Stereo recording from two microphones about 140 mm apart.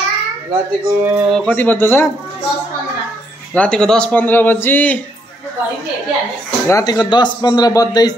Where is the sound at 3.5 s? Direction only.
5° left (ahead or behind).